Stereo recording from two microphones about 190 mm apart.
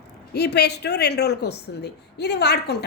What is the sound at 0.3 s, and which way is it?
A woman's voice, 60° left (ahead or behind).